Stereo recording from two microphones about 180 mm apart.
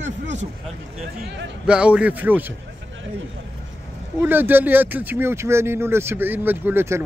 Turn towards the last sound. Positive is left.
turn(degrees=-10)  # may be behind; listen again after turning